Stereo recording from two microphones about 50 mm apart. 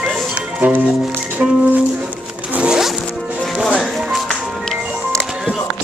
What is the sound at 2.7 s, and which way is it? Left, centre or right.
Zipper, centre.